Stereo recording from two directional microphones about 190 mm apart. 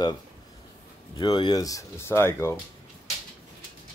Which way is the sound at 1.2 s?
25° left (ahead or behind).